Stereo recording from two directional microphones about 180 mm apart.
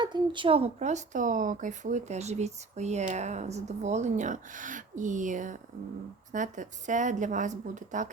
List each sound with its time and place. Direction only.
0.0 s a woman's voice: 25° right (ahead or behind); by 8.1 s 45° right (ahead or behind)